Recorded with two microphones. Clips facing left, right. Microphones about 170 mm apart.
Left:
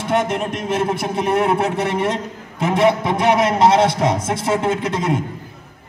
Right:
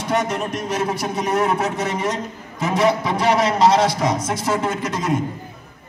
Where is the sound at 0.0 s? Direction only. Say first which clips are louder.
Left 2 dB; 55° left (ahead or behind).